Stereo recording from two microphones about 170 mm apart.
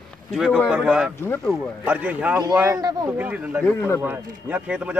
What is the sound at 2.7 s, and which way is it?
Speech, 20° right (ahead or behind).